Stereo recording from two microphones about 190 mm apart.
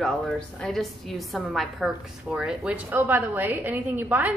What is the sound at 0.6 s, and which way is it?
A woman's voice, centre (ahead or behind).